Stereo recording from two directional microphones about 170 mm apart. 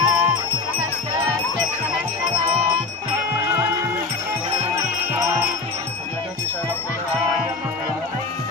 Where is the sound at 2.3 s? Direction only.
30° right (ahead or behind).